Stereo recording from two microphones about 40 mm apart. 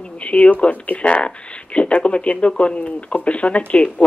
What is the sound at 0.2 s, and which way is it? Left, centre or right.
Speech, left.